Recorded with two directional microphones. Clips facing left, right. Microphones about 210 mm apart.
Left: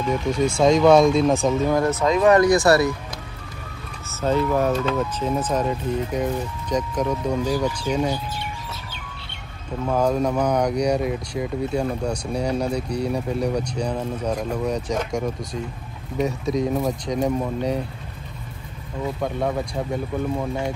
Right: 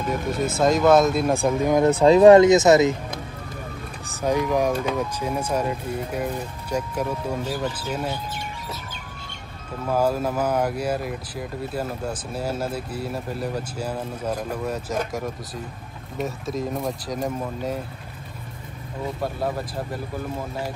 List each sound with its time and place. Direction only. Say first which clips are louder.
0.0 s speech: left 3 dB; 50° right (ahead or behind)
0.5 s speech: left 2 dB; 5° right (ahead or behind)
2.0 s speech: right 7 dB; 30° right (ahead or behind)
4.1 s speech: left 1 dB; 15° right (ahead or behind)
9.8 s speech: left 2 dB; 5° right (ahead or behind)
19.2 s speech: left 3 dB; 5° right (ahead or behind)